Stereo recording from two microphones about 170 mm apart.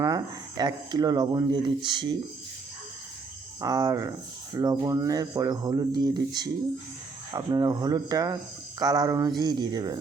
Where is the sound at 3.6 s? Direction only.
20° right (ahead or behind).